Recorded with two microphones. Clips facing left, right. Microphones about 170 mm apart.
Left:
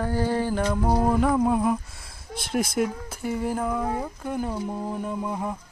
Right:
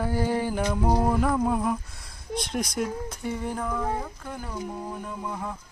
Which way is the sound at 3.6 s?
15° left (ahead or behind).